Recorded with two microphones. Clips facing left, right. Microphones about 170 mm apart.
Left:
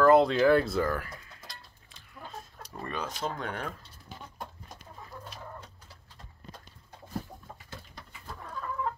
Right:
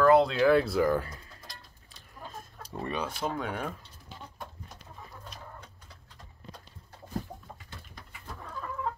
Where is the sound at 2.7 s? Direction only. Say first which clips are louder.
Right 3 dB; 15° right (ahead or behind).